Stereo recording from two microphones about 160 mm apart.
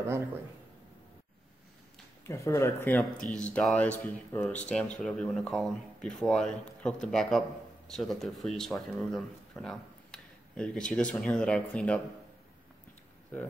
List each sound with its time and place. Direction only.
2.2 s speech: 15° left (ahead or behind)
3.0 s speech: 5° left (ahead or behind)